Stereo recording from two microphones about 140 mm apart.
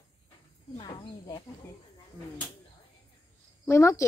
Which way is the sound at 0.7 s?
35° left (ahead or behind).